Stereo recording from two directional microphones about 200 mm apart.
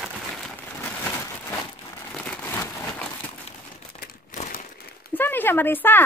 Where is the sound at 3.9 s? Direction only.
45° left (ahead or behind).